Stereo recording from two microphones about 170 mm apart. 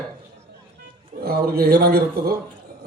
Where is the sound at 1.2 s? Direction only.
65° right (ahead or behind).